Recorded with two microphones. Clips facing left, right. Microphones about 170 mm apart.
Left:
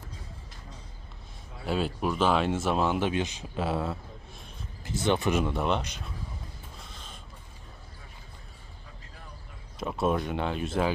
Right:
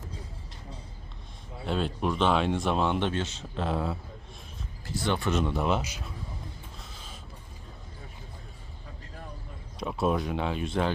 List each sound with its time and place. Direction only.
1.6 s speech: 5° left (ahead or behind)
4.9 s speech: 20° left (ahead or behind)
5.4 s speech: centre (ahead or behind)
6.7 s a sound: 5° right (ahead or behind)
9.7 s speech: centre (ahead or behind)